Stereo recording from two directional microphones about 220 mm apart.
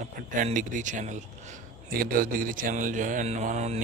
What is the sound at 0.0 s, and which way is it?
A man's voice, 35° right (ahead or behind).